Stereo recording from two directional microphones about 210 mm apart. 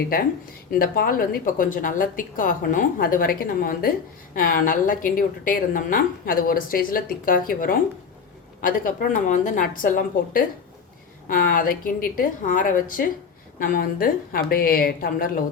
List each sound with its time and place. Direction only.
0.1 s a woman's voice: 45° left (ahead or behind)